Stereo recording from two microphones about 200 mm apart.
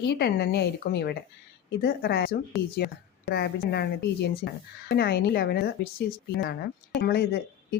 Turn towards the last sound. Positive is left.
turn(degrees=50)  # may be behind; listen again after turning